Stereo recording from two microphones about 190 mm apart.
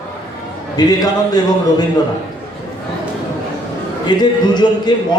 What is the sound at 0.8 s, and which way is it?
Speech, 20° left (ahead or behind).